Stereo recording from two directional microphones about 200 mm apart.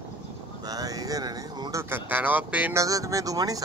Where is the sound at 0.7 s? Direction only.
20° right (ahead or behind).